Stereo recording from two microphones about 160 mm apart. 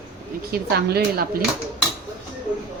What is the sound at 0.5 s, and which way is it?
Speech, 75° right (ahead or behind).